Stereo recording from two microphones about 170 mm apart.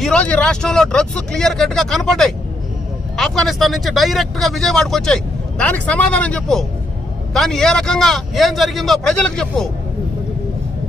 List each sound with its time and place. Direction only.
0.0 s speech: 5° left (ahead or behind)